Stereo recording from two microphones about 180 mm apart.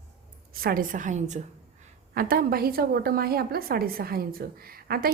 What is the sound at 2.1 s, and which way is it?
A woman's voice, 55° right (ahead or behind).